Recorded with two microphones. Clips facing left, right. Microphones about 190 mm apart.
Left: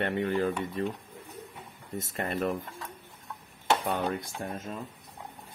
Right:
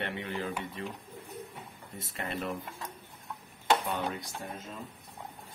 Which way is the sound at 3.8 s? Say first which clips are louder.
Left 4 dB; 55° left (ahead or behind).